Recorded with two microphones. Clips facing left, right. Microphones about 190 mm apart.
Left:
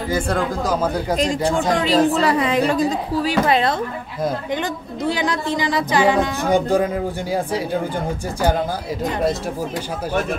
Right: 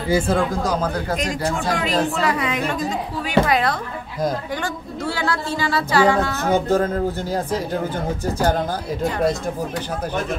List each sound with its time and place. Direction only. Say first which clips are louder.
0.1 s speech: right 3 dB; centre (ahead or behind)
1.1 s speech: left 4 dB; 30° left (ahead or behind)
5.0 s speech: left 3 dB; 15° left (ahead or behind)